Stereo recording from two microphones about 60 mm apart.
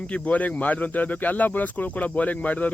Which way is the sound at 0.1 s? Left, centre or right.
Left.